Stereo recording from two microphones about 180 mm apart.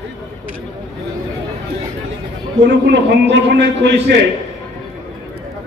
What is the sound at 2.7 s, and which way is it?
A man's voice, 70° right (ahead or behind).